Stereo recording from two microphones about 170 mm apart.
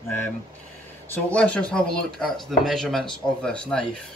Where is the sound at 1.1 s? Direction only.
10° left (ahead or behind).